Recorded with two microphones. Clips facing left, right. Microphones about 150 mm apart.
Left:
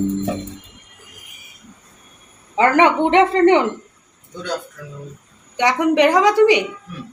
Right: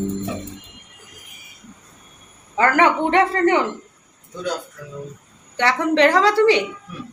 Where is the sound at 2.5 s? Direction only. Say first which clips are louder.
Left 3 dB; 20° left (ahead or behind).